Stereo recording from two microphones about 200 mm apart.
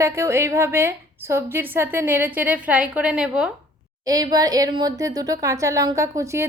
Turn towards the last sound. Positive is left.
turn(degrees=-15)  # may be behind; listen again after turning